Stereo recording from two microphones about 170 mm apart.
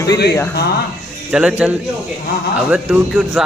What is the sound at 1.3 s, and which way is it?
A man's voice, 5° right (ahead or behind).